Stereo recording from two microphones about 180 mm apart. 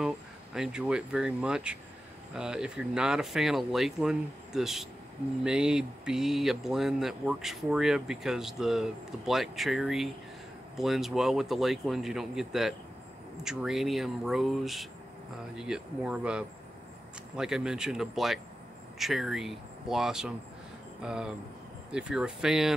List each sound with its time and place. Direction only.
0.6 s speech: 5° right (ahead or behind)